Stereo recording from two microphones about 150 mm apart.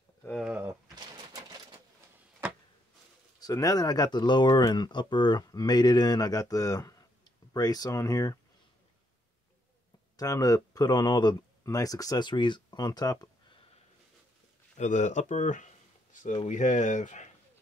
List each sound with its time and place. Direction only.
0.4 s a sound: 5° right (ahead or behind)
0.7 s bird: 25° right (ahead or behind)
3.3 s speech: 25° left (ahead or behind)
10.1 s speech: 20° left (ahead or behind)
14.8 s speech: 50° left (ahead or behind)